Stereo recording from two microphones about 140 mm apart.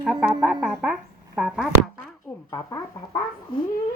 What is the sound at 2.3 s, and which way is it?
Speech, 25° left (ahead or behind).